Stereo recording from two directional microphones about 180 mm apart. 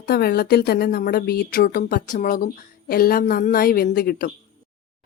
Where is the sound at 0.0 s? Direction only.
60° left (ahead or behind).